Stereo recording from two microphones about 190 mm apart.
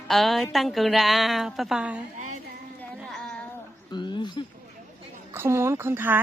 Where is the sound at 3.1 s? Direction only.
5° left (ahead or behind).